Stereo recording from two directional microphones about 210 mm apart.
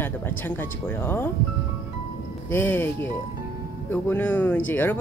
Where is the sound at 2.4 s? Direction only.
10° left (ahead or behind).